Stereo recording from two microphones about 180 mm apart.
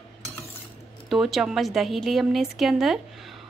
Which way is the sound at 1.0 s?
Centre (ahead or behind).